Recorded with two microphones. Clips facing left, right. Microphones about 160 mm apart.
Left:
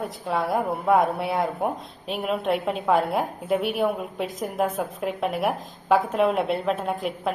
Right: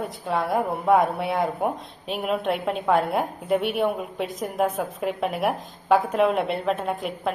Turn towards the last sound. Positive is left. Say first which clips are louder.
# even
turn(degrees=0)  # may be behind; listen again after turning